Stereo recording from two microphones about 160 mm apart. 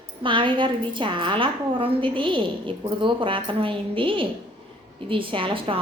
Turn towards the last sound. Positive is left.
turn(degrees=-35)  # may be behind; listen again after turning